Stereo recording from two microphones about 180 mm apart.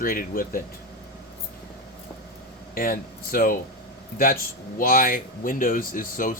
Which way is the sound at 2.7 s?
55° left (ahead or behind).